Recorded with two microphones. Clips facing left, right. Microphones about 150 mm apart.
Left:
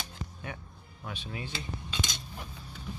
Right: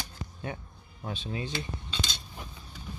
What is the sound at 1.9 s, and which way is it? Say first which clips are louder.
Cutlery: even; 10° left (ahead or behind).